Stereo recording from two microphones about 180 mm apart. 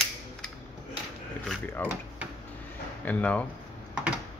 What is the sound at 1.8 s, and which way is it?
Speech, 10° left (ahead or behind).